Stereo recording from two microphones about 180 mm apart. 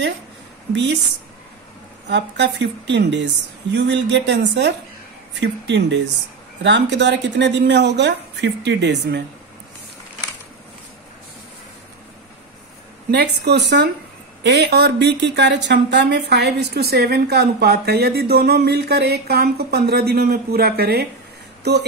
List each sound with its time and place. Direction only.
2.0 s speech: 75° right (ahead or behind)
13.1 s speech: 70° right (ahead or behind)